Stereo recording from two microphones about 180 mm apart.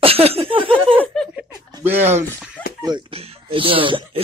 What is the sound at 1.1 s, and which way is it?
Speech, 5° left (ahead or behind).